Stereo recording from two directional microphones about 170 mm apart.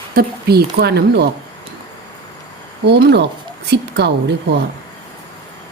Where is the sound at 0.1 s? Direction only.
65° right (ahead or behind).